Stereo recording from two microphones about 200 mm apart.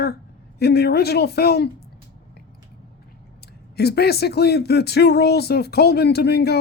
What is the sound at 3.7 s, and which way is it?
Speech, 55° left (ahead or behind).